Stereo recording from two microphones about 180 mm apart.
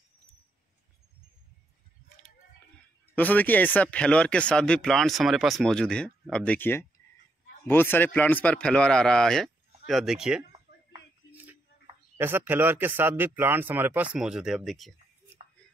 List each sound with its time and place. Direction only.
3.2 s speech: 10° left (ahead or behind)
12.2 s speech: 10° right (ahead or behind)